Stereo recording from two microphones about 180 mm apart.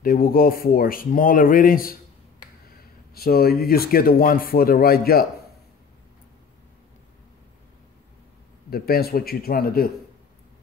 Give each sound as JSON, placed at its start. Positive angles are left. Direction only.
{"t": 0.0, "sound": "speech", "side_deg": 55}
{"t": 3.2, "sound": "speech", "side_deg": 55}
{"t": 8.6, "sound": "speech", "side_deg": 55}